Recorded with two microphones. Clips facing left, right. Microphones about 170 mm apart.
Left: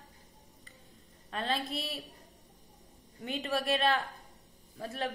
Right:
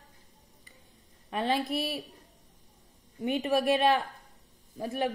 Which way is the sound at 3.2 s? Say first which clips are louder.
Right 6 dB; 15° right (ahead or behind).